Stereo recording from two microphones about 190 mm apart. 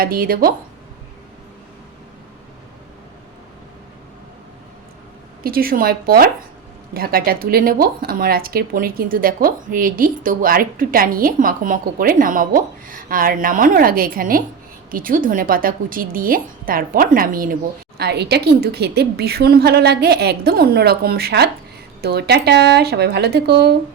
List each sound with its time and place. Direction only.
0.0 s speech: 50° right (ahead or behind)
5.4 s a woman's voice: 50° right (ahead or behind)